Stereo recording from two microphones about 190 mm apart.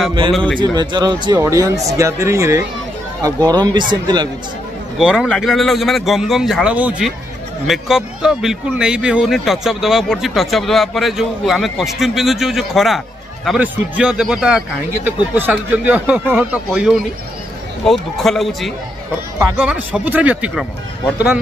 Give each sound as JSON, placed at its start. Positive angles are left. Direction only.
{"t": 0.6, "sound": "speech", "side_deg": -25}
{"t": 4.9, "sound": "a man's voice", "side_deg": 0}